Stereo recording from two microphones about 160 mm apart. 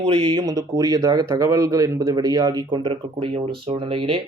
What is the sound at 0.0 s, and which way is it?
Speech, 30° right (ahead or behind).